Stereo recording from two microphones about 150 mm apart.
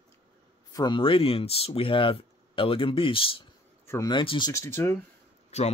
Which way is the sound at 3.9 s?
25° left (ahead or behind).